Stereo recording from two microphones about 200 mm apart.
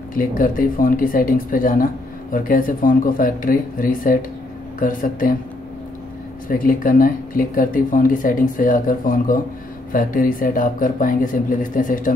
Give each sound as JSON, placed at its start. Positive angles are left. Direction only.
{"t": 0.1, "sound": "speech", "side_deg": 45}
{"t": 6.5, "sound": "speech", "side_deg": 45}